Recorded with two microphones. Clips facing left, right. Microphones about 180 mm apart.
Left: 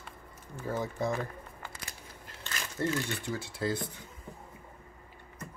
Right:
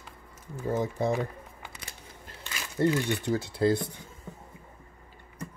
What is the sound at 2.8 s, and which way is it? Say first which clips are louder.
Speech: right 7 dB; 25° right (ahead or behind).